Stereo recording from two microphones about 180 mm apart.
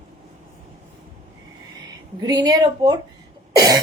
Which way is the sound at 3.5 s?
20° right (ahead or behind).